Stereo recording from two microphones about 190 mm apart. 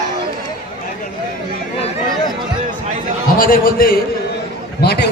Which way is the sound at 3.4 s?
50° left (ahead or behind).